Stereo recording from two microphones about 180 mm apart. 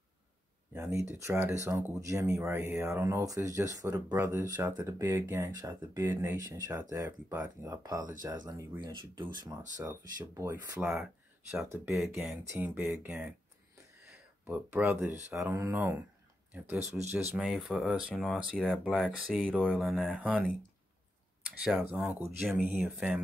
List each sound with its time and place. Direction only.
0.7 s speech: 15° right (ahead or behind)
14.4 s speech: 10° right (ahead or behind)
16.5 s speech: 5° right (ahead or behind)
21.6 s speech: 5° right (ahead or behind)